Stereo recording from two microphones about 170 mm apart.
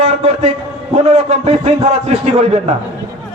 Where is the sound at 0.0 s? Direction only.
40° right (ahead or behind).